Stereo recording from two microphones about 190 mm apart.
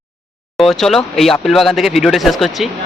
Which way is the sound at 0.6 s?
Centre (ahead or behind).